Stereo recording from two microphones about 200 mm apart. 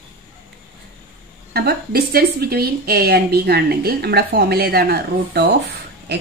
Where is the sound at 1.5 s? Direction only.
50° right (ahead or behind).